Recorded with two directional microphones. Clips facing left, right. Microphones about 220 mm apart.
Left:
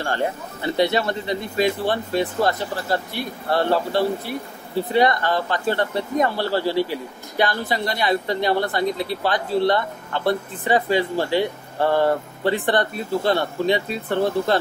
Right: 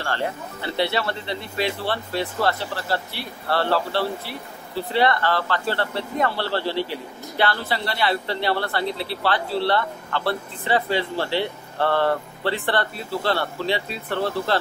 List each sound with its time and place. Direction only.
0.0 s speech: 15° left (ahead or behind)